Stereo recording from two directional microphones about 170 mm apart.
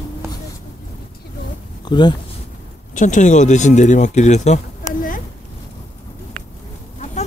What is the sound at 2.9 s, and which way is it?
Speech, 50° left (ahead or behind).